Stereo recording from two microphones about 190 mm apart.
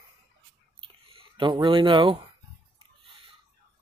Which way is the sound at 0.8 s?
25° right (ahead or behind).